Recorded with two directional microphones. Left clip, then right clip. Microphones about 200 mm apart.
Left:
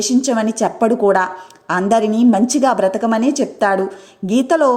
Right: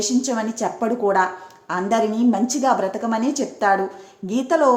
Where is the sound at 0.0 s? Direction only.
35° left (ahead or behind).